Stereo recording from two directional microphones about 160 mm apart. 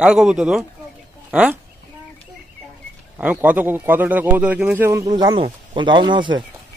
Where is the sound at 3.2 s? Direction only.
10° right (ahead or behind); by 6.4 s 30° right (ahead or behind).